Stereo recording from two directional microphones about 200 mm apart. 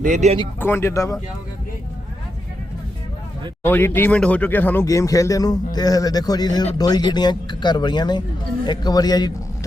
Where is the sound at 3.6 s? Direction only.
10° left (ahead or behind).